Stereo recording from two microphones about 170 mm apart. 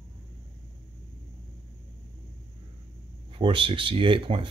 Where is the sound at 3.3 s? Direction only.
30° right (ahead or behind).